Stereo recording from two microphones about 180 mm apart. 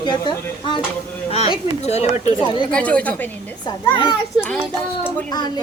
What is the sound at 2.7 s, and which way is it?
Speech, 5° left (ahead or behind).